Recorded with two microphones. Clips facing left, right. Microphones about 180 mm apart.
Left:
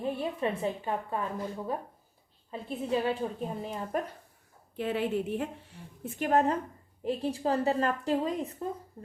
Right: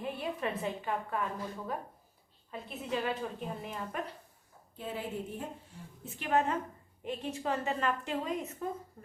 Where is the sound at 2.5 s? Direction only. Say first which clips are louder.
Left 6 dB; 30° left (ahead or behind).